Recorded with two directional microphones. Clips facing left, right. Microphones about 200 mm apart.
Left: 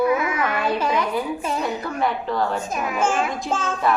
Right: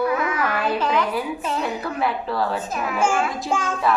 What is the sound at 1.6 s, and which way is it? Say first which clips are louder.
A woman's voice: even; 5° right (ahead or behind).